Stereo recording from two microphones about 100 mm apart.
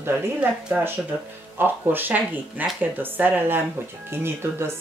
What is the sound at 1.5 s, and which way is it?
Speech, 20° right (ahead or behind).